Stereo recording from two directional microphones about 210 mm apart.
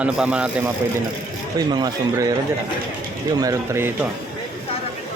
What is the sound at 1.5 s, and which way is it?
Speech, 20° right (ahead or behind).